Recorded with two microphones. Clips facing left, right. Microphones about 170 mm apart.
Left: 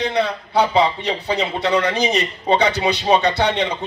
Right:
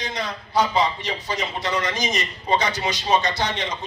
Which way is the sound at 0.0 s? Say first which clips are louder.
Left 9 dB; 65° left (ahead or behind).